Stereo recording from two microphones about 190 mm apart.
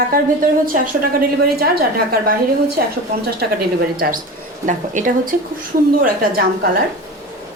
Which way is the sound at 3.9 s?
50° right (ahead or behind).